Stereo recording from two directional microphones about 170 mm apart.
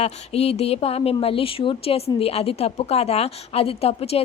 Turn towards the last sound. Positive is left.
turn(degrees=35)  # may be behind; listen again after turning